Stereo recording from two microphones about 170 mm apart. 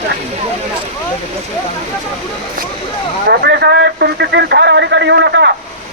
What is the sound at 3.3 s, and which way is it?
A man's voice, 75° right (ahead or behind).